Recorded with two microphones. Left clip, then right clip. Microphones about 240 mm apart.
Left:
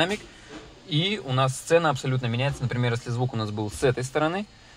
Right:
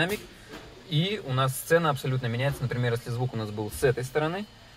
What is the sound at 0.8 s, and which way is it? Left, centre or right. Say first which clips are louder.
Speech: left 3 dB; left.